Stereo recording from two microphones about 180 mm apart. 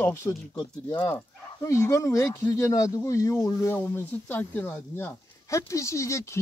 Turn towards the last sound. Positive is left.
turn(degrees=15)  # may be behind; listen again after turning